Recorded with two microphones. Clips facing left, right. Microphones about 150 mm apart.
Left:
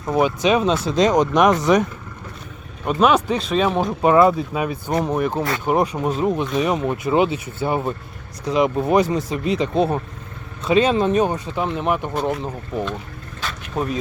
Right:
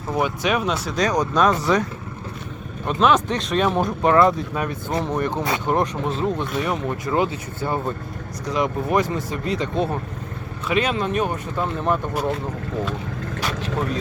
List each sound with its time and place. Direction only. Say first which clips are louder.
0.1 s speech: left 4 dB; 20° left (ahead or behind)
2.8 s speech: left 2 dB; 10° left (ahead or behind)